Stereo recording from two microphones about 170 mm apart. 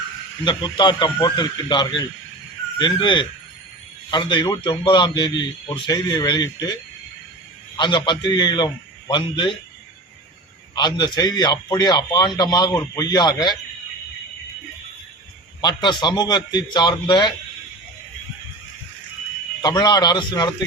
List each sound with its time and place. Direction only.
0.4 s a man's voice: 25° left (ahead or behind)
7.8 s a man's voice: 25° left (ahead or behind)
10.8 s a man's voice: 25° left (ahead or behind)
15.6 s a man's voice: 25° left (ahead or behind)
19.6 s a man's voice: 25° left (ahead or behind)